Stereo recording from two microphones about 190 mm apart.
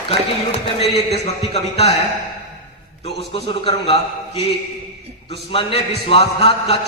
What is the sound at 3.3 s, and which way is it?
A man's voice, 30° left (ahead or behind).